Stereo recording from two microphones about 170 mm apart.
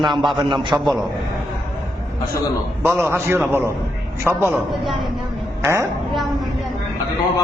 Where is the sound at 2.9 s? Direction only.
10° right (ahead or behind).